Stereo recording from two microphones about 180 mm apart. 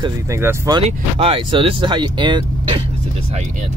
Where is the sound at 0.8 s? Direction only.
30° right (ahead or behind).